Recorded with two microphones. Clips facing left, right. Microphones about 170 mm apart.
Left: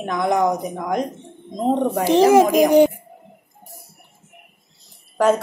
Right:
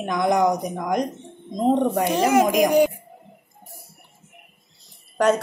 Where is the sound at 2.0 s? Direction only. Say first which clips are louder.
Left 5 dB; 30° left (ahead or behind).